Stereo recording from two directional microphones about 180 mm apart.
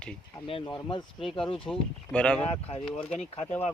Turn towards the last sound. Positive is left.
turn(degrees=35)  # may be behind; listen again after turning